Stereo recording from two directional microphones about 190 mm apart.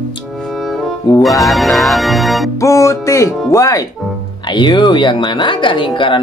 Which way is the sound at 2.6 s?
15° left (ahead or behind).